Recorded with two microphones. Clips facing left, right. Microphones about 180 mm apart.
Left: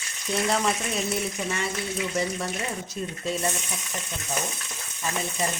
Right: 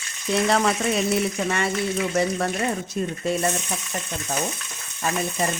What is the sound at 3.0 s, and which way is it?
Speech, 60° right (ahead or behind).